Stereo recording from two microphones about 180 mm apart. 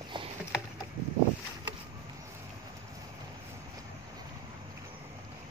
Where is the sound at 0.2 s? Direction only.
25° right (ahead or behind).